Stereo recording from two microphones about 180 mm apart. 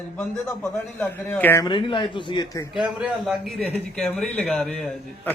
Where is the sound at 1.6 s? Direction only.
25° left (ahead or behind).